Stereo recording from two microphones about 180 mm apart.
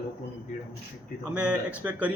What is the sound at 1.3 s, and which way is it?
Speech, 5° right (ahead or behind).